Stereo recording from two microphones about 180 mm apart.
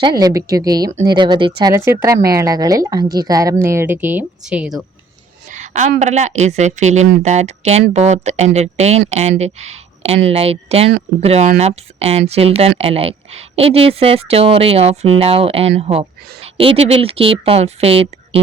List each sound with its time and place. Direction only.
0.0 s a woman's voice: 20° right (ahead or behind)
1.7 s a woman's voice: 15° right (ahead or behind)
5.5 s a sound: 40° right (ahead or behind)
6.0 s speech: 40° right (ahead or behind)